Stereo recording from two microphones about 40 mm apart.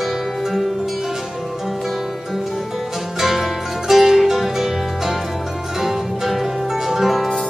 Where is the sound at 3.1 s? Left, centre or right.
Centre.